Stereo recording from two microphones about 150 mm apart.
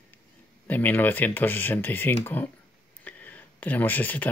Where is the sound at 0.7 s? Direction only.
10° left (ahead or behind).